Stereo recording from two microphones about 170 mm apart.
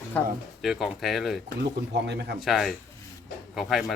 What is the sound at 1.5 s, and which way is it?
Speech, 75° right (ahead or behind).